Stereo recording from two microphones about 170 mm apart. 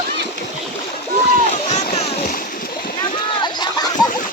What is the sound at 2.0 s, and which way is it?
Splash, 35° left (ahead or behind).